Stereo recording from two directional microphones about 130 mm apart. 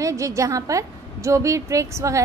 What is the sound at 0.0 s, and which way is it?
A woman's voice, 25° right (ahead or behind).